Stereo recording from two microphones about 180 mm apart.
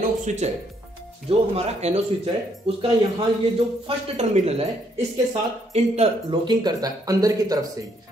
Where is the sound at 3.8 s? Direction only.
35° right (ahead or behind).